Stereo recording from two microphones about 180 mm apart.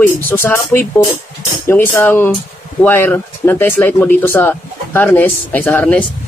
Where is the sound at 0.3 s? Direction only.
15° left (ahead or behind).